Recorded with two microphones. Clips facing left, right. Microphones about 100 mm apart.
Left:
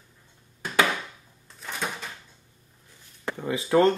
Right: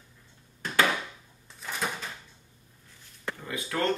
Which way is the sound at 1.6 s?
Centre (ahead or behind).